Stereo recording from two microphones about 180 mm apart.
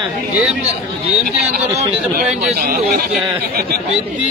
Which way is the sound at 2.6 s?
55° right (ahead or behind).